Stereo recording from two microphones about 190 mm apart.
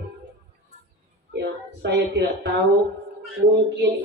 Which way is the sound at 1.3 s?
65° right (ahead or behind).